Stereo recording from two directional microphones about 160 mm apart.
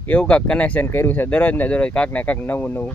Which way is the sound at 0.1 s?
5° left (ahead or behind).